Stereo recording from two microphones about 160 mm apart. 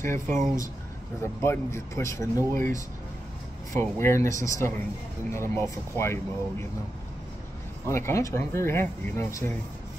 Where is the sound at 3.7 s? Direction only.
15° left (ahead or behind).